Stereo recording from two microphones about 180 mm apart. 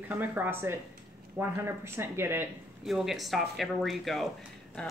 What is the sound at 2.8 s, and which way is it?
Speech, centre (ahead or behind).